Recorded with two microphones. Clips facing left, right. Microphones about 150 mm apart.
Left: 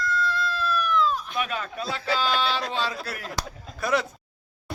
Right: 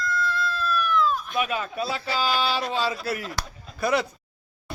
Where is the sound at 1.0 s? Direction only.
25° left (ahead or behind).